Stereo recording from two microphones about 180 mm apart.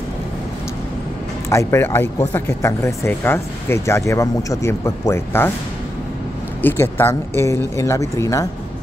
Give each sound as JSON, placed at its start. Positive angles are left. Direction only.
{"t": 1.5, "sound": "speech", "side_deg": 15}
{"t": 6.6, "sound": "speech", "side_deg": 10}